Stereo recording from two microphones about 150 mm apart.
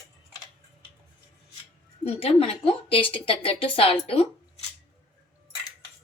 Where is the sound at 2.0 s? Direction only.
40° left (ahead or behind).